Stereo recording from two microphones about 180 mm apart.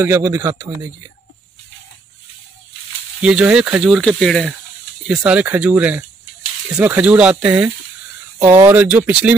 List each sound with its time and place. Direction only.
0.0 s speech: 15° right (ahead or behind)
3.2 s speech: 5° right (ahead or behind)